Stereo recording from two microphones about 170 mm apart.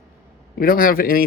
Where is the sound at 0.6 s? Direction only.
60° left (ahead or behind).